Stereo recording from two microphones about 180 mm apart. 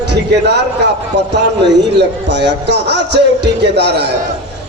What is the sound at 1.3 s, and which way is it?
A man's voice, 70° right (ahead or behind).